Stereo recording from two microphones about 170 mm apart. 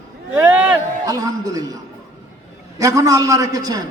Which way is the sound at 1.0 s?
20° right (ahead or behind).